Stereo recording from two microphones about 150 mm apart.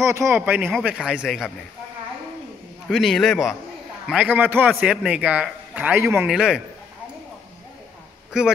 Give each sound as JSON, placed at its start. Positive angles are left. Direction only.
{"t": 0.0, "sound": "a man's voice", "side_deg": -20}
{"t": 2.9, "sound": "speech", "side_deg": 0}
{"t": 4.1, "sound": "a man's voice", "side_deg": -10}
{"t": 8.3, "sound": "speech", "side_deg": -5}